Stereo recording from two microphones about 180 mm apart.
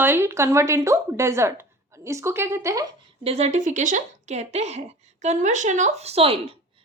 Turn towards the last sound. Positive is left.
turn(degrees=-35)  # may be behind; listen again after turning